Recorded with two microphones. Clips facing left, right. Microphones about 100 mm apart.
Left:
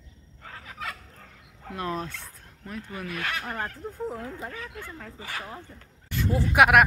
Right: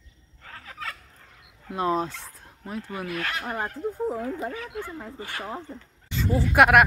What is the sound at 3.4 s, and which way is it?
Speech, 10° right (ahead or behind).